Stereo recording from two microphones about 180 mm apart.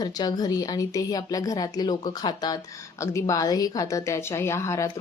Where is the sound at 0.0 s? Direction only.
20° left (ahead or behind).